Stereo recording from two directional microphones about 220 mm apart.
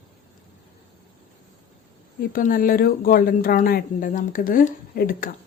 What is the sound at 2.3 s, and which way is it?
Speech, 40° left (ahead or behind).